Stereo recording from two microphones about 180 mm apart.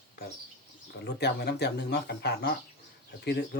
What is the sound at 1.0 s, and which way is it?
Speech, 65° left (ahead or behind).